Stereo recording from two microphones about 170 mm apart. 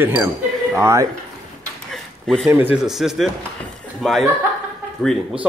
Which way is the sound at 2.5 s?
10° right (ahead or behind).